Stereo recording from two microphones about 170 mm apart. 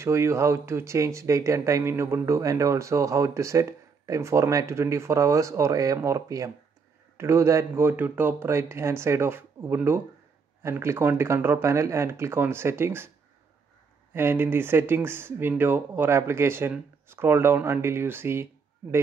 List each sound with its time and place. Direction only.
0.0 s speech: 15° right (ahead or behind)
14.1 s speech: 10° right (ahead or behind)